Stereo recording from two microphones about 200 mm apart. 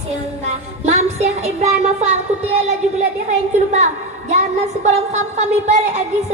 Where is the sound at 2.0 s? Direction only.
35° right (ahead or behind).